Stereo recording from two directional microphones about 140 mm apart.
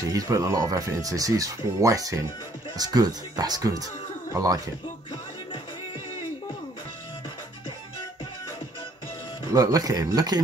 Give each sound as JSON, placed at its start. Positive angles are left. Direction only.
{"t": 0.1, "sound": "speech", "side_deg": -25}
{"t": 9.5, "sound": "speech", "side_deg": -25}